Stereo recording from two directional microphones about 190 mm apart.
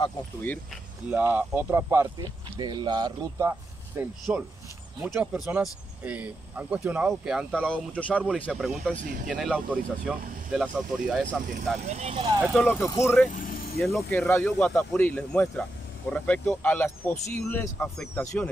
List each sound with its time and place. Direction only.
1.1 s speech: 10° right (ahead or behind)
7.7 s speech: 5° left (ahead or behind)
8.1 s speech: 5° right (ahead or behind)
8.9 s speech: 45° right (ahead or behind)
9.3 s speech: centre (ahead or behind)
11.9 s speech: 30° right (ahead or behind)
12.5 s speech: 10° left (ahead or behind)
13.3 s vehicle: 45° left (ahead or behind)
13.9 s speech: centre (ahead or behind)